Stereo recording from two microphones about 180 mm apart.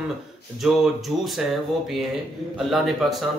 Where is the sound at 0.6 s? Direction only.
Centre (ahead or behind).